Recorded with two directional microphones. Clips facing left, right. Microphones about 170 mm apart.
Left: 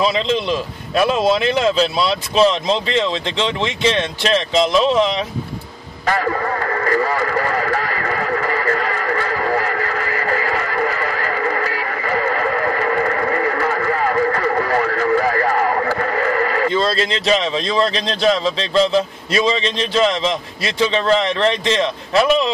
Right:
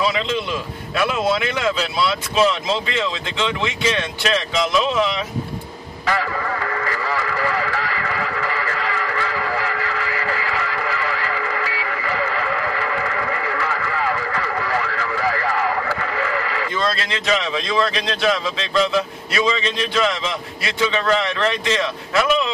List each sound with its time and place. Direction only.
0.0 s a man's voice: 30° left (ahead or behind)
6.0 s radio: 45° left (ahead or behind)
16.7 s speech: 30° left (ahead or behind)